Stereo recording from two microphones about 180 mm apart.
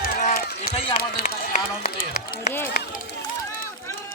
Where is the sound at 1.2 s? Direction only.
55° left (ahead or behind).